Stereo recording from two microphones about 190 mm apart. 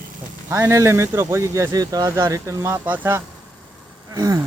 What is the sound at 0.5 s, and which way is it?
Speech, 15° right (ahead or behind).